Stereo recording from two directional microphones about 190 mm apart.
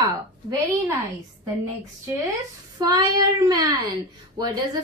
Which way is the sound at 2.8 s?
20° right (ahead or behind).